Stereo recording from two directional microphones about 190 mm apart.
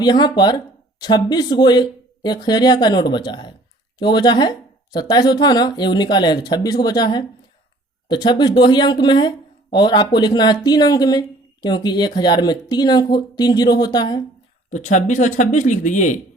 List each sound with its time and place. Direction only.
0.0 s speech: 20° left (ahead or behind)
14.7 s speech: 40° left (ahead or behind)